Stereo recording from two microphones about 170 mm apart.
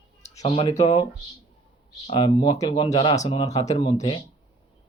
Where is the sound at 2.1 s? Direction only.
30° left (ahead or behind).